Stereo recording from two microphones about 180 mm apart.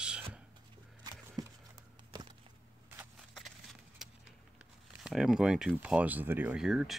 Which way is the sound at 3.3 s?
Centre (ahead or behind).